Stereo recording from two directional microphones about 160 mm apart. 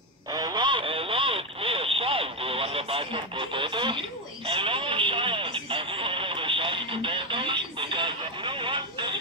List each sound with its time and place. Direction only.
0.3 s radio: 25° right (ahead or behind)